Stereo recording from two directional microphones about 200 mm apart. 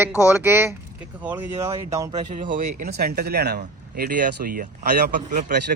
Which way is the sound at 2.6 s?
45° right (ahead or behind).